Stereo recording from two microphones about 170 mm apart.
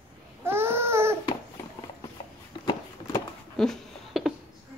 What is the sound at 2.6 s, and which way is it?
Walk, 20° left (ahead or behind).